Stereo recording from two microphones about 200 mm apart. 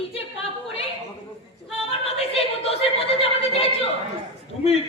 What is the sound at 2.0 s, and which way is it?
A man's voice, 30° left (ahead or behind).